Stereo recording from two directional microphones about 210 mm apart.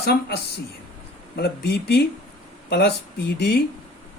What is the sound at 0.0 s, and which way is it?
Speech, 50° left (ahead or behind).